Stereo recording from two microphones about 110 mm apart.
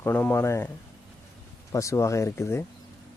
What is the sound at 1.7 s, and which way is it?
Speech, 25° left (ahead or behind).